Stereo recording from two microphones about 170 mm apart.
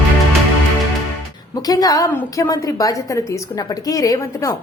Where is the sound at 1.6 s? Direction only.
20° left (ahead or behind).